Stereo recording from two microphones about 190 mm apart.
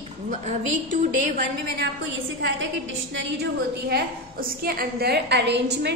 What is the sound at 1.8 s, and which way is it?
Speech, 75° right (ahead or behind).